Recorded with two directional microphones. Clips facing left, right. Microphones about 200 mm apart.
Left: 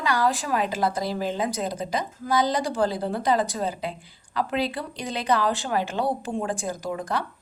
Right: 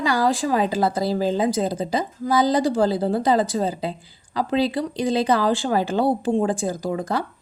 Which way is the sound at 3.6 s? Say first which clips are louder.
Right 4 dB; 30° right (ahead or behind).